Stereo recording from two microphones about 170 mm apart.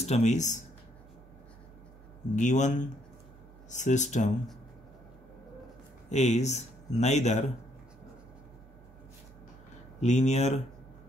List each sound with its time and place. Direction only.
0.0 s speech: 40° left (ahead or behind)
2.3 s speech: 45° left (ahead or behind)
6.0 s speech: 40° left (ahead or behind)
9.9 s speech: 45° left (ahead or behind)